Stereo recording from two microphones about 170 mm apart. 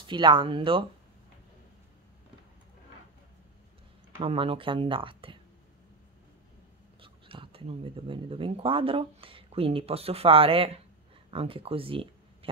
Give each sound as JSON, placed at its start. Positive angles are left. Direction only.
{"t": 0.0, "sound": "speech", "side_deg": -30}
{"t": 4.2, "sound": "speech", "side_deg": -35}
{"t": 7.0, "sound": "speech", "side_deg": -30}